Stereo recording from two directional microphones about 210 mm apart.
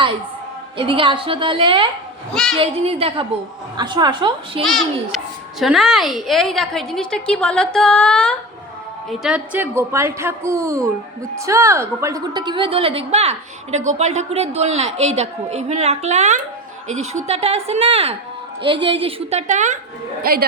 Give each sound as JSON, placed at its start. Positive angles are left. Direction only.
{"t": 0.8, "sound": "a woman's voice", "side_deg": -25}
{"t": 2.3, "sound": "a child's voice", "side_deg": 0}
{"t": 2.6, "sound": "a woman's voice", "side_deg": -25}
{"t": 4.6, "sound": "a child's voice", "side_deg": 0}